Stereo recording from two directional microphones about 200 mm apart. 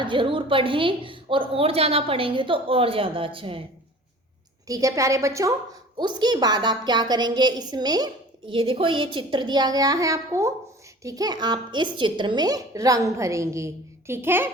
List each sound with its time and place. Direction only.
0.0 s a woman's voice: 25° right (ahead or behind)
4.6 s a woman's voice: 15° right (ahead or behind)